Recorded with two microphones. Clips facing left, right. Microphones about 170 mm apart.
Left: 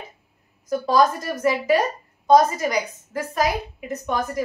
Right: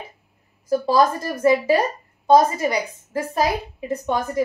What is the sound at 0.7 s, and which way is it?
A woman's voice, 30° right (ahead or behind).